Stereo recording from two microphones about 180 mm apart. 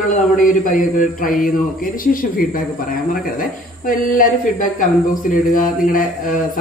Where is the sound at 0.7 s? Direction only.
50° left (ahead or behind).